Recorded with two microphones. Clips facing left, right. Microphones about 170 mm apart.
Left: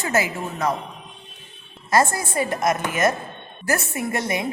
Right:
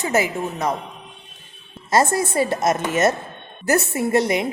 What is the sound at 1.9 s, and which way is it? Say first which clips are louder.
A woman's voice: right 2 dB; 20° right (ahead or behind).